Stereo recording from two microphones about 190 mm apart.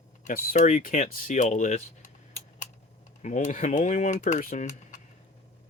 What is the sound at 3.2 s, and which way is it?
Speech, 40° left (ahead or behind).